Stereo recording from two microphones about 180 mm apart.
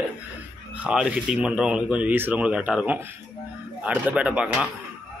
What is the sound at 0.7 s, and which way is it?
Speech, 5° right (ahead or behind).